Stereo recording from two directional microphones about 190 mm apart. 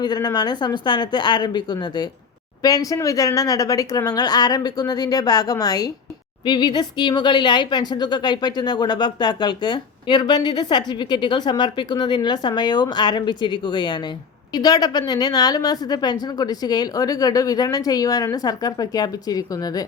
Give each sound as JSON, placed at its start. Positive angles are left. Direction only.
{"t": 0.0, "sound": "speech", "side_deg": 20}